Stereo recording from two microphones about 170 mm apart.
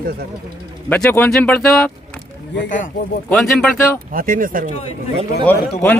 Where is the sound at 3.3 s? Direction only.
5° left (ahead or behind).